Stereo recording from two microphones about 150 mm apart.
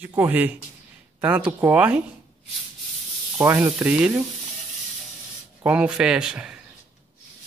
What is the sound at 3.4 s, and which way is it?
Speech, 15° right (ahead or behind).